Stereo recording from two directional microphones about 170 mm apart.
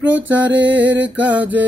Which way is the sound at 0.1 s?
90° right.